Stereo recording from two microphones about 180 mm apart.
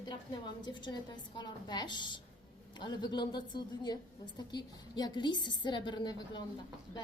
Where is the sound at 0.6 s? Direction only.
25° left (ahead or behind).